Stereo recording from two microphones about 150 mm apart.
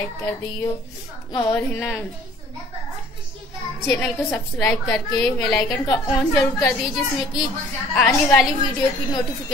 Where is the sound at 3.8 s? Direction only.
15° left (ahead or behind).